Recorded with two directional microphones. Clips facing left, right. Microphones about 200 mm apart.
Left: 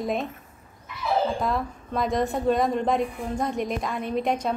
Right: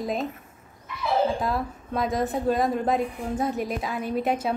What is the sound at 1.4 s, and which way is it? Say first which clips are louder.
A woman's voice: left 1 dB; centre (ahead or behind).